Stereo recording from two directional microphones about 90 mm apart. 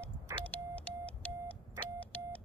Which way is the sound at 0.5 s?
15° left (ahead or behind).